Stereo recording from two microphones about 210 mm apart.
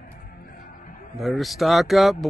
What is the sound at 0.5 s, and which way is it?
Music, 40° left (ahead or behind).